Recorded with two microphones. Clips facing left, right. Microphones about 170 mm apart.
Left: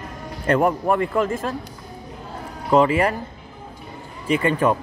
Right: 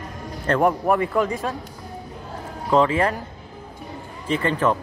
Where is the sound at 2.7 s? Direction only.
10° left (ahead or behind).